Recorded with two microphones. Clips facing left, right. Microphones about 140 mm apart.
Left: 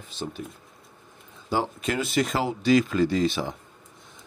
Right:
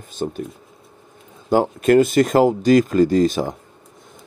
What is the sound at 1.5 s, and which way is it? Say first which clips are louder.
Speech: right 12 dB; 50° right (ahead or behind).